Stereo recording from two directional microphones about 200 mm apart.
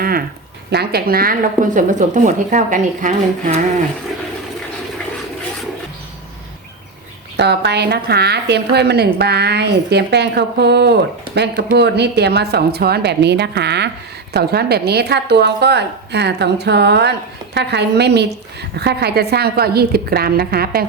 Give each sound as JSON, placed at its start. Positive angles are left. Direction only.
{"t": 0.7, "sound": "speech", "side_deg": -50}
{"t": 7.3, "sound": "a woman's voice", "side_deg": -55}